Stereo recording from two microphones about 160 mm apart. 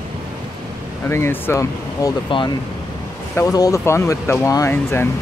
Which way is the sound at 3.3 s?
20° left (ahead or behind).